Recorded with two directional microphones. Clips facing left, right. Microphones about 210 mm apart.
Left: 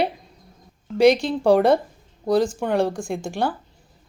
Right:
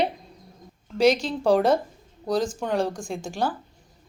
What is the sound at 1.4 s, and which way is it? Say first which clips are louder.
Speech: left 3 dB; 10° left (ahead or behind).